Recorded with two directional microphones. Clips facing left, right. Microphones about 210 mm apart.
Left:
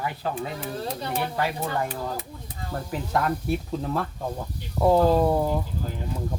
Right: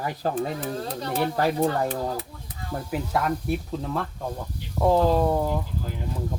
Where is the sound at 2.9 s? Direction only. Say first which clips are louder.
Even; 5° right (ahead or behind).